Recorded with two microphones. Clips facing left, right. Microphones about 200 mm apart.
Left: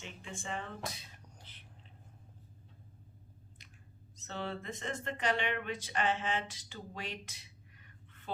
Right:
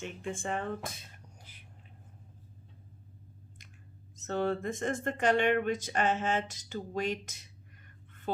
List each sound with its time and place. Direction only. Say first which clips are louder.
0.0 s speech: right 9 dB; 55° right (ahead or behind)
1.4 s a sound: right 1 dB; 10° right (ahead or behind)
4.2 s speech: right 10 dB; 50° right (ahead or behind)